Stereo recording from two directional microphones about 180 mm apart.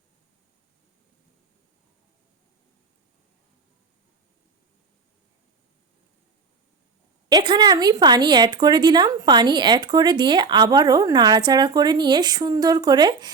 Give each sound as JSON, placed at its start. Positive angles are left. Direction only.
{"t": 7.3, "sound": "a woman's voice", "side_deg": -25}